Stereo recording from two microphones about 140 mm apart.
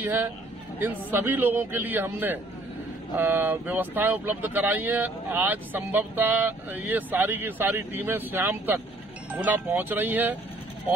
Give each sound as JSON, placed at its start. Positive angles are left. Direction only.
{"t": 0.0, "sound": "speech", "side_deg": -15}